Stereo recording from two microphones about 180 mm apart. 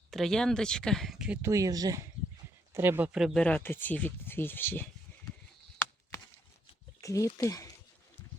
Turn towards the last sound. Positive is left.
turn(degrees=20)  # may be behind; listen again after turning